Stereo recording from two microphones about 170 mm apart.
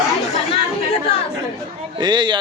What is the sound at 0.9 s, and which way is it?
Chatter, 35° left (ahead or behind).